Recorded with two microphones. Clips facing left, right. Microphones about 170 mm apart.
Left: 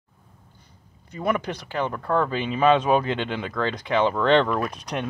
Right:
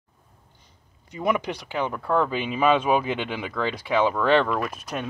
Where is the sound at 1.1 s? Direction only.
15° right (ahead or behind).